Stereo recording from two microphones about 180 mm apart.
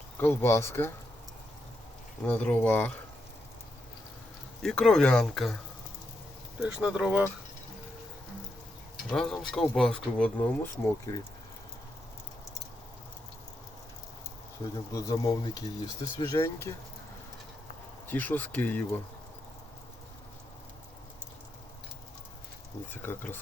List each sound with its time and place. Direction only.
0.2 s speech: 15° left (ahead or behind)
2.2 s speech: 10° left (ahead or behind)
4.6 s speech: 5° left (ahead or behind)
6.6 s speech: 5° right (ahead or behind)
9.0 s speech: 5° left (ahead or behind)
14.9 s speech: 20° left (ahead or behind)
18.1 s speech: 10° left (ahead or behind)
23.0 s speech: 10° left (ahead or behind)